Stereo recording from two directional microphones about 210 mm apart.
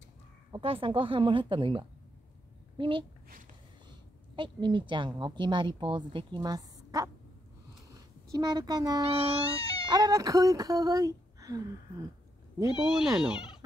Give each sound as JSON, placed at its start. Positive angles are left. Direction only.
{"t": 0.5, "sound": "a woman's voice", "side_deg": -25}
{"t": 4.4, "sound": "a woman's voice", "side_deg": -25}
{"t": 8.3, "sound": "a woman's voice", "side_deg": -20}
{"t": 9.6, "sound": "cat", "side_deg": 15}
{"t": 9.8, "sound": "speech", "side_deg": -20}
{"t": 12.7, "sound": "speech", "side_deg": -5}